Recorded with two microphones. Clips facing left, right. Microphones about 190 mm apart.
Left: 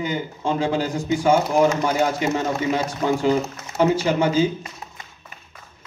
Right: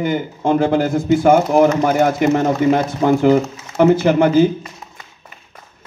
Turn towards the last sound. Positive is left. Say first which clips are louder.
# right 7 dB
turn(degrees=-60)  # may be behind; listen again after turning